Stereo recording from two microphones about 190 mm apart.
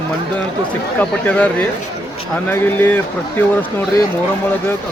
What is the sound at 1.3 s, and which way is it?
Speech, 10° left (ahead or behind).